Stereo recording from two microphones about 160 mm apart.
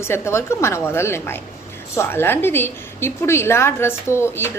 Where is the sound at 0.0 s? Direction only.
15° left (ahead or behind).